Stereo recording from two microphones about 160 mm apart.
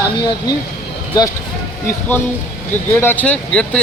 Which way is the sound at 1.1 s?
25° left (ahead or behind).